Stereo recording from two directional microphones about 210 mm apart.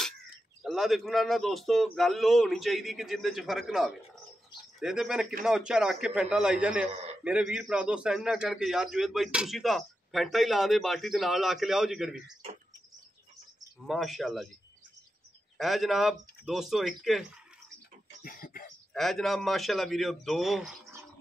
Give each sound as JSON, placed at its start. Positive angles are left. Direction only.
{"t": 0.6, "sound": "a man's voice", "side_deg": 0}
{"t": 13.7, "sound": "a man's voice", "side_deg": 0}
{"t": 15.5, "sound": "a man's voice", "side_deg": 0}
{"t": 18.2, "sound": "a sound", "side_deg": 45}
{"t": 18.9, "sound": "a man's voice", "side_deg": 0}